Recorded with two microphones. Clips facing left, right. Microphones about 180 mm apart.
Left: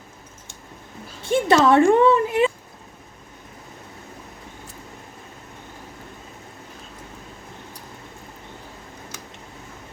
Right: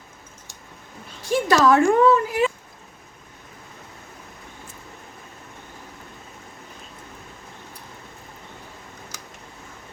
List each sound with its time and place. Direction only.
1.2 s a woman's voice: 25° left (ahead or behind)